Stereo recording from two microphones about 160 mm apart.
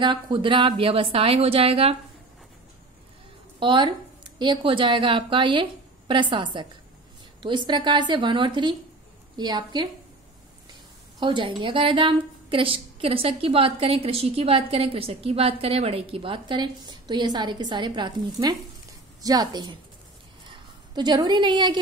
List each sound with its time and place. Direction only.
0.0 s a woman's voice: 30° right (ahead or behind)
3.5 s a woman's voice: 30° right (ahead or behind)
11.1 s a woman's voice: 30° right (ahead or behind)
20.9 s a woman's voice: 30° right (ahead or behind)